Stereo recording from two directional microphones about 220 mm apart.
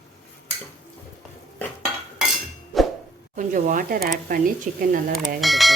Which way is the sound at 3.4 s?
35° right (ahead or behind).